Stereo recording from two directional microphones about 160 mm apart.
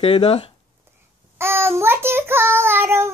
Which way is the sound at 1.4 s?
15° right (ahead or behind).